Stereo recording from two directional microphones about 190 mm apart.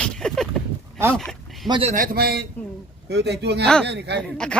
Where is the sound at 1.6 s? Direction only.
25° right (ahead or behind).